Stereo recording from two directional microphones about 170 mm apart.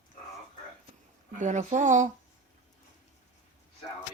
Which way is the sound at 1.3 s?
45° right (ahead or behind).